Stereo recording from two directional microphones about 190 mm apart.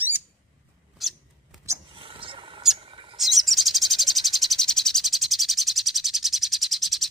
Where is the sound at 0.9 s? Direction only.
Centre (ahead or behind).